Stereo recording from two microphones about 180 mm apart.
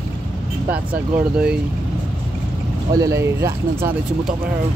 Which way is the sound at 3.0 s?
20° right (ahead or behind).